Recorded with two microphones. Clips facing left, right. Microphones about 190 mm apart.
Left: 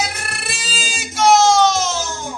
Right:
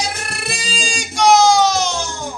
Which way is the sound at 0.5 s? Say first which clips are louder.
Right 6 dB; 5° left (ahead or behind).